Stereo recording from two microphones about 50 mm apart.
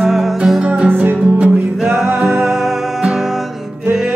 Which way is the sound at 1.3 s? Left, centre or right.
Right.